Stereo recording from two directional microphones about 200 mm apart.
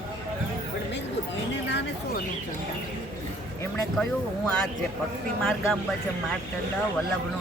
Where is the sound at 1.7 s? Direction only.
60° left (ahead or behind).